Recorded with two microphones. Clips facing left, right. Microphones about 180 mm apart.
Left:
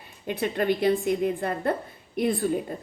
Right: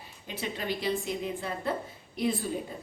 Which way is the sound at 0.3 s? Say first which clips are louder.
Left 9 dB; 60° left (ahead or behind).